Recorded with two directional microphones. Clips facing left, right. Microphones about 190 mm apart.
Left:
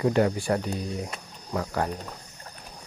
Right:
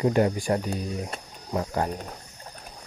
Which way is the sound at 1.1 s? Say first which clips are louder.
Right 2 dB; 20° right (ahead or behind).